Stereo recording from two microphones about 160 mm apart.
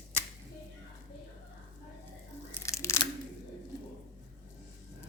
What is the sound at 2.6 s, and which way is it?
Crunch, 20° left (ahead or behind).